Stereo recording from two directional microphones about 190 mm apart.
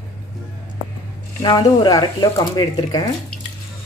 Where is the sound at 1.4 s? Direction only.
20° left (ahead or behind).